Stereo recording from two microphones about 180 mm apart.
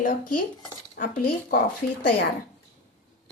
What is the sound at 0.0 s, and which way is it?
A woman's voice, 50° left (ahead or behind).